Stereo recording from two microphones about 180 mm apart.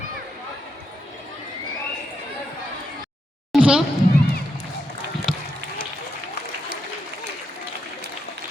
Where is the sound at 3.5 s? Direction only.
5° right (ahead or behind).